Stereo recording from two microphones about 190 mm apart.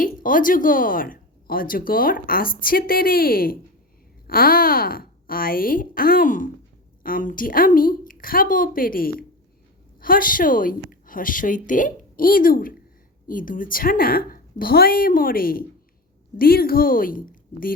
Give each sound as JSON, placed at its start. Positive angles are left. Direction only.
{"t": 0.0, "sound": "speech", "side_deg": 45}